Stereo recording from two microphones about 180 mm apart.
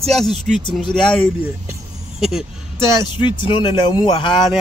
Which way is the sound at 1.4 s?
5° right (ahead or behind).